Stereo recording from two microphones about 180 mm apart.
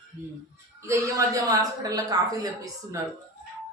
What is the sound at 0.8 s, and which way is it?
A man's voice, 15° right (ahead or behind).